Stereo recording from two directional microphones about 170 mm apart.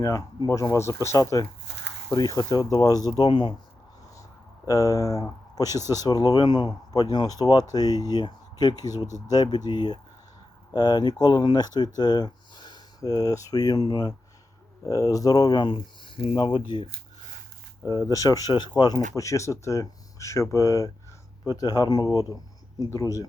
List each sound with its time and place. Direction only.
0.0 s speech: 20° left (ahead or behind)
4.6 s speech: 20° left (ahead or behind)
18.1 s speech: 20° left (ahead or behind)